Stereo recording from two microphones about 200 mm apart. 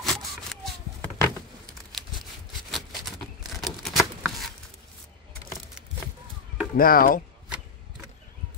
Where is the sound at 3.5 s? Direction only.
Centre (ahead or behind).